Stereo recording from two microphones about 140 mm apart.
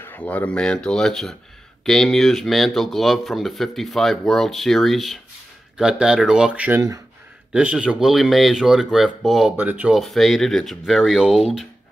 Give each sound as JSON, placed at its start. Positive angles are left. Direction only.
{"t": 0.0, "sound": "speech", "side_deg": 10}